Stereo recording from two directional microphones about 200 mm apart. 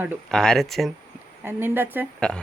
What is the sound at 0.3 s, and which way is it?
Speech, 5° left (ahead or behind).